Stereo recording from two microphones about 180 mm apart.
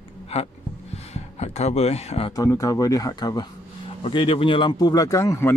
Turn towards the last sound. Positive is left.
turn(degrees=15)  # may be behind; listen again after turning